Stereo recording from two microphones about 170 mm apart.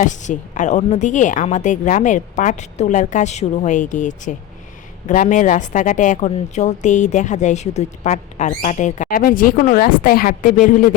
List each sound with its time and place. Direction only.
0.0 s speech: 45° left (ahead or behind)